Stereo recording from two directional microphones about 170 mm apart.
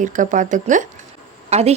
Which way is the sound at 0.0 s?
50° right (ahead or behind).